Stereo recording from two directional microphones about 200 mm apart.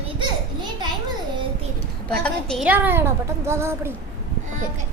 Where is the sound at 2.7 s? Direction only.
10° right (ahead or behind).